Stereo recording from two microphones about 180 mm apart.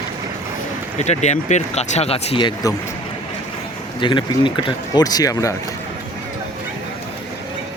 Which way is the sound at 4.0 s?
25° left (ahead or behind).